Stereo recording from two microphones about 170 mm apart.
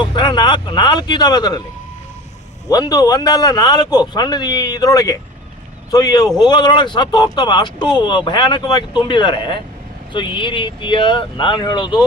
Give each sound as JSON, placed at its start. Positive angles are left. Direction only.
{"t": 0.0, "sound": "speech", "side_deg": 25}
{"t": 2.6, "sound": "speech", "side_deg": 20}